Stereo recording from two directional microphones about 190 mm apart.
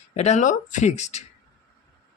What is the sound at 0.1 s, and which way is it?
Speech, 35° left (ahead or behind).